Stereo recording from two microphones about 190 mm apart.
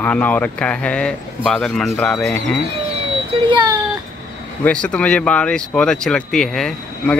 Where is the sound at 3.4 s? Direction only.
25° right (ahead or behind).